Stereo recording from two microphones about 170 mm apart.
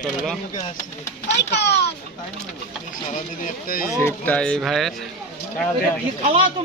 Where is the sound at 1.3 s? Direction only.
85° left.